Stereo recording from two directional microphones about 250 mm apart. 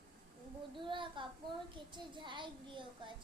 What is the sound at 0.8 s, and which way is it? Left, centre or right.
A child's voice, centre.